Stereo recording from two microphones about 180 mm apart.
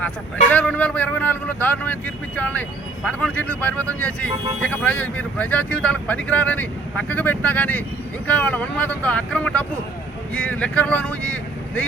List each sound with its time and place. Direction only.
0.5 s speech: 5° left (ahead or behind)